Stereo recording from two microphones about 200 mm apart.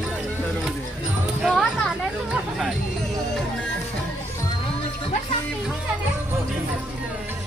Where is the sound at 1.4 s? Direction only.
Centre (ahead or behind).